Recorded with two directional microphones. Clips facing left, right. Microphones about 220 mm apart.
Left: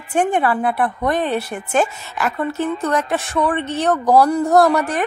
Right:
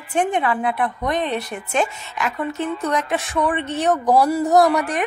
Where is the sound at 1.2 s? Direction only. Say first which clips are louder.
Left 1 dB; 5° left (ahead or behind).